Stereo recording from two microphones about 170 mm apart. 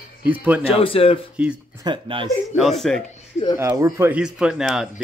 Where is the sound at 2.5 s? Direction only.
Centre (ahead or behind).